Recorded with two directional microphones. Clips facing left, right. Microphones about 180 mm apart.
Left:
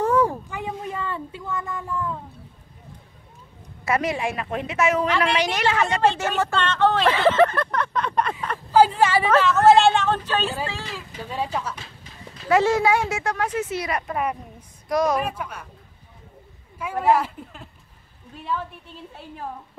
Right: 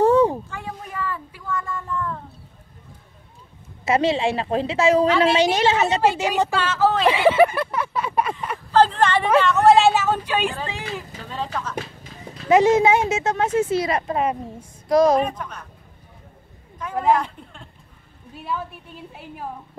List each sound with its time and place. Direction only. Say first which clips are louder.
0.0 s a sound: right 5 dB; 25° right (ahead or behind)
0.5 s a sound: left 3 dB; 20° left (ahead or behind)
3.8 s speech: right 4 dB; 25° right (ahead or behind); by 7.1 s 5° right (ahead or behind)
7.1 s a sound: right 3 dB; 10° right (ahead or behind)
8.7 s a woman's voice: even; 10° left (ahead or behind); by 11.1 s 15° right (ahead or behind)
11.2 s speech: left 2 dB; 10° left (ahead or behind)
12.4 s speech: right 4 dB; 20° right (ahead or behind)
15.1 s speech: right 4 dB; 10° left (ahead or behind)
16.7 s speech: even; 5° left (ahead or behind)
18.3 s speech: even; 5° right (ahead or behind)